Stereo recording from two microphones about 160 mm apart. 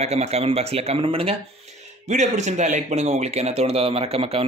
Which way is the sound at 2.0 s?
45° right (ahead or behind).